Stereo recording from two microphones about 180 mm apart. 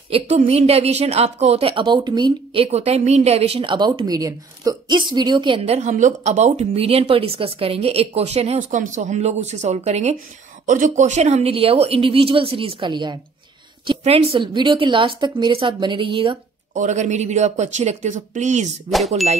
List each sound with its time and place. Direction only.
0.1 s a woman's voice: 35° right (ahead or behind)
16.7 s a woman's voice: 40° right (ahead or behind)
18.9 s ding: centre (ahead or behind)